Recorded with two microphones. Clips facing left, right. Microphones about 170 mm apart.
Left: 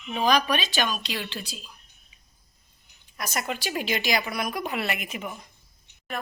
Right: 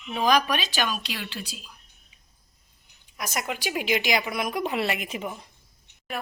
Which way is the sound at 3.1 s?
10° right (ahead or behind).